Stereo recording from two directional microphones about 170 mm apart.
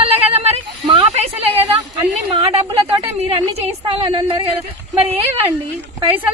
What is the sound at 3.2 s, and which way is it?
A woman's voice, 35° right (ahead or behind).